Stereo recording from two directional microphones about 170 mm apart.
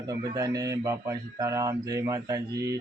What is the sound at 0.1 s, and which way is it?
A man's voice, 20° right (ahead or behind).